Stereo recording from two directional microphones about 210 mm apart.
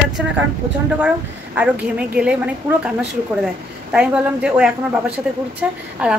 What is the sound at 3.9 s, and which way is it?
Speech, 5° right (ahead or behind).